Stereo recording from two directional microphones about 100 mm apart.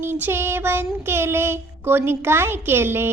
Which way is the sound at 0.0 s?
20° right (ahead or behind).